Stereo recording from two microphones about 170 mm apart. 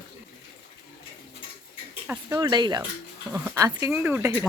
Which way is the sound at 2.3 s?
25° right (ahead or behind).